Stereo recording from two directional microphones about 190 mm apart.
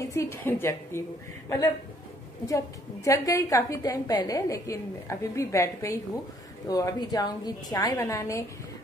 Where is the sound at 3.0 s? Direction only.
15° left (ahead or behind).